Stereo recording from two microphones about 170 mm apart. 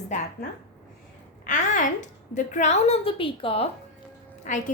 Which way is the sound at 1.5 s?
50° left (ahead or behind).